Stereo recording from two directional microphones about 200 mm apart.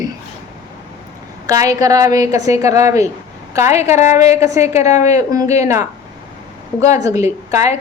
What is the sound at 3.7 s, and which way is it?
Speech, 35° left (ahead or behind).